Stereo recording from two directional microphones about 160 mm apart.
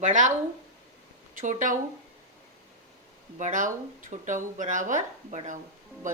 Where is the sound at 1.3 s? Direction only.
50° right (ahead or behind).